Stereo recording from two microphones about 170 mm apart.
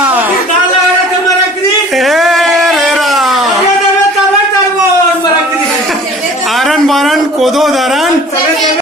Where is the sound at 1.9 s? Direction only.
Centre (ahead or behind).